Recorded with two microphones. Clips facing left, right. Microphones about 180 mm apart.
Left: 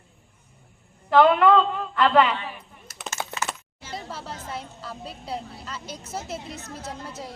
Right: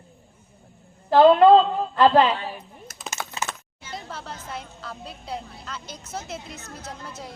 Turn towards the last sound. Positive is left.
turn(degrees=30)  # may be behind; listen again after turning